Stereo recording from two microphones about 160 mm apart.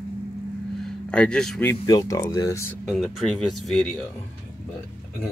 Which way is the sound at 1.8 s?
25° left (ahead or behind).